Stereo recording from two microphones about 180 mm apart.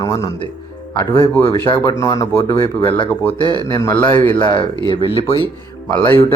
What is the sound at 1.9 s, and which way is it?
Speech, 20° left (ahead or behind).